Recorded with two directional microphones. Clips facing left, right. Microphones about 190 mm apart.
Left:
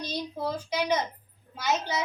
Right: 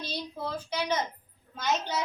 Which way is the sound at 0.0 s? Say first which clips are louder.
Left 4 dB; 15° left (ahead or behind).